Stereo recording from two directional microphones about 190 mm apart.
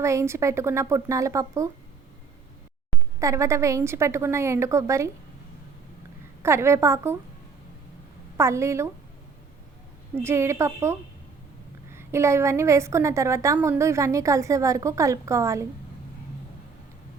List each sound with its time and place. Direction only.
0.0 s a woman's voice: 15° right (ahead or behind)
3.2 s a woman's voice: 15° right (ahead or behind)
6.4 s a woman's voice: 15° right (ahead or behind)
8.4 s a woman's voice: 15° right (ahead or behind)
10.2 s a woman's voice: 15° right (ahead or behind)